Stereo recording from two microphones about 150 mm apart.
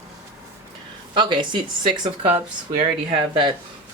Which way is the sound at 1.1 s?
30° right (ahead or behind).